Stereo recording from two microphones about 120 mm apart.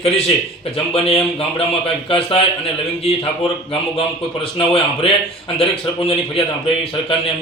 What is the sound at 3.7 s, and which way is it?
Speech, 50° left (ahead or behind).